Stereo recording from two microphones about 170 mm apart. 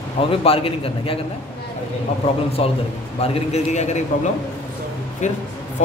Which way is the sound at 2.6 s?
35° left (ahead or behind).